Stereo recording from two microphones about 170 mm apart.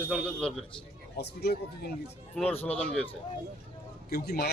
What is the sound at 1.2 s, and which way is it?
Speech, 80° left.